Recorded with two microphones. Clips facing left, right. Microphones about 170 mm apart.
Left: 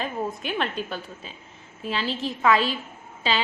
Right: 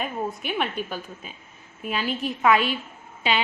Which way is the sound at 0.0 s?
10° right (ahead or behind).